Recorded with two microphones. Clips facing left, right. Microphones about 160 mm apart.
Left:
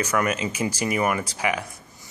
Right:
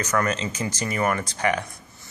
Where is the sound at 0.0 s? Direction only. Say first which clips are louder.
Left 1 dB; 10° left (ahead or behind).